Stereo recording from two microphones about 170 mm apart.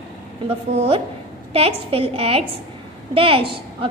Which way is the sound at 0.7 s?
35° right (ahead or behind).